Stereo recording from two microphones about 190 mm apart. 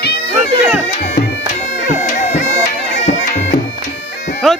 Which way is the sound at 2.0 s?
35° left (ahead or behind).